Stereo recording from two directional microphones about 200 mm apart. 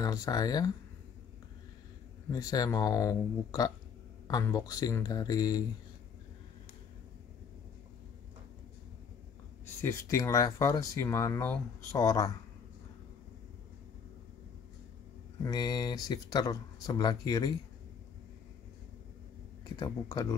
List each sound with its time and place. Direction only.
0.0 s speech: 20° left (ahead or behind)
2.3 s speech: 20° left (ahead or behind)
9.8 s speech: 15° left (ahead or behind)
15.4 s speech: 20° left (ahead or behind)
19.6 s speech: 20° left (ahead or behind)